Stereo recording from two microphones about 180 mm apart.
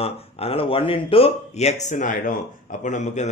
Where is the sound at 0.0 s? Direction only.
35° left (ahead or behind).